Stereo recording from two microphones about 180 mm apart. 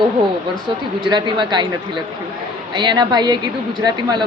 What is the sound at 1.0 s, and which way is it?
Speech, 25° right (ahead or behind).